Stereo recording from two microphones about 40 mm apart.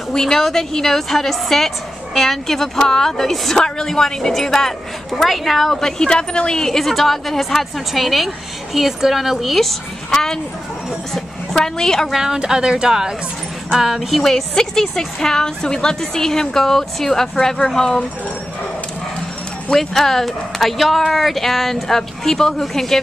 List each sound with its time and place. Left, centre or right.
0.1 s a woman's voice: centre
5.9 s a woman's voice: left; by 9.6 s centre
9.6 s a woman's voice: centre
12.1 s speech: centre
14.1 s a woman's voice: centre
19.7 s a woman's voice: centre